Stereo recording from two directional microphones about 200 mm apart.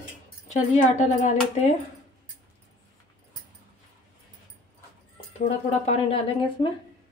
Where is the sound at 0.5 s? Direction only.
35° left (ahead or behind).